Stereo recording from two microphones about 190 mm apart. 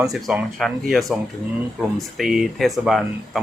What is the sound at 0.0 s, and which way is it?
Speech, centre (ahead or behind).